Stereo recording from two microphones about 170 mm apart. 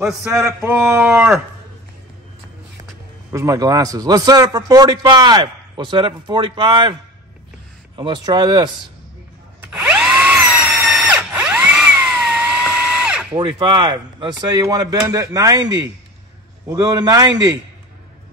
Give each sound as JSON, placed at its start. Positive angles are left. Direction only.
{"t": 0.5, "sound": "speech", "side_deg": -15}
{"t": 3.3, "sound": "a man's voice", "side_deg": -20}
{"t": 9.6, "sound": "drill", "side_deg": -5}
{"t": 13.3, "sound": "a man's voice", "side_deg": -30}